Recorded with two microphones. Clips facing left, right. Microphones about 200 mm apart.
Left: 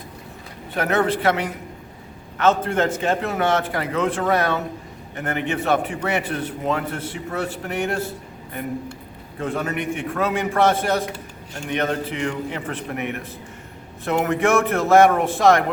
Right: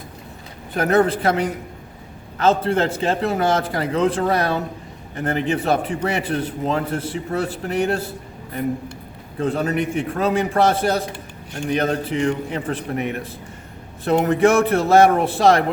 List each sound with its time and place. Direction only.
0.8 s a man's voice: 35° right (ahead or behind)
9.4 s a man's voice: 35° right (ahead or behind)